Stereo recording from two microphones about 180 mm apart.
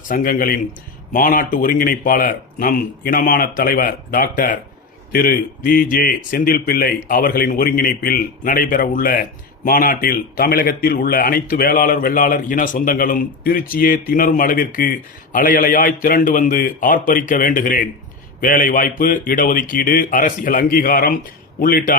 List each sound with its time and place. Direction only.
0.1 s speech: 50° left (ahead or behind)